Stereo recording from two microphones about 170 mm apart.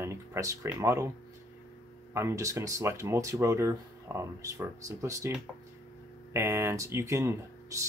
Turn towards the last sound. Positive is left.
turn(degrees=-20)  # may be behind; listen again after turning